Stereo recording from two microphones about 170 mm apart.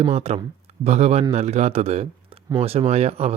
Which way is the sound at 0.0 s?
35° right (ahead or behind).